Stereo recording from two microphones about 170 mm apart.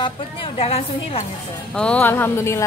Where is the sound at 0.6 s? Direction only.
35° left (ahead or behind).